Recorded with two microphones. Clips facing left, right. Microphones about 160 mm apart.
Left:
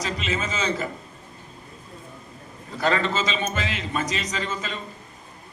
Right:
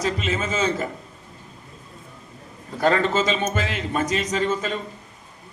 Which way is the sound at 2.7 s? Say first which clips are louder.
Right 4 dB; 50° right (ahead or behind).